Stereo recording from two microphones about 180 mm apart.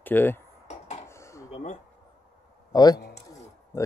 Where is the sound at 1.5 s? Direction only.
40° left (ahead or behind).